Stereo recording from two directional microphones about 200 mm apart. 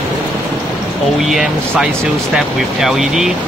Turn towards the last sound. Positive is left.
turn(degrees=0)  # may be behind; listen again after turning